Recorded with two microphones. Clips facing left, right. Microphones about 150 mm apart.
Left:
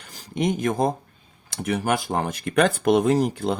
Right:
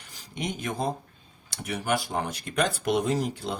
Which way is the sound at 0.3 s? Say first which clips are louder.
Left 9 dB; 50° left (ahead or behind).